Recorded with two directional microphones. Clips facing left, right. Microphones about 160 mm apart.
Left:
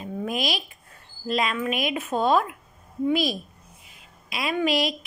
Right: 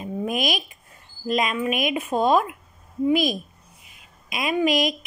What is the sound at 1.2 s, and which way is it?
Speech, 15° right (ahead or behind).